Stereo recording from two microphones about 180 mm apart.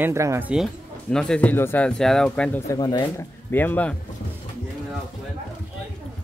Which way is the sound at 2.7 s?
20° left (ahead or behind).